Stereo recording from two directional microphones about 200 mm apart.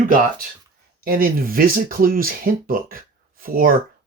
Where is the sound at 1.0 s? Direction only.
45° right (ahead or behind).